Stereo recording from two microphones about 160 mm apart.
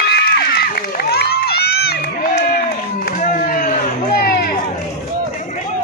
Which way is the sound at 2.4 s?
65° left (ahead or behind).